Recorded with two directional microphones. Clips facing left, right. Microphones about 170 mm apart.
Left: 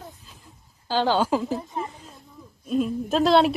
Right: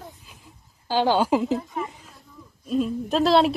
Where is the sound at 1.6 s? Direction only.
20° left (ahead or behind).